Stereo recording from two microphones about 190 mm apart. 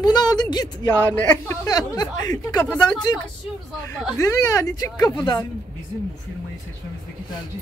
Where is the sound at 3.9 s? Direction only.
15° left (ahead or behind).